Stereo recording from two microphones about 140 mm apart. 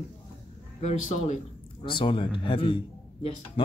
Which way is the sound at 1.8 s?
35° left (ahead or behind).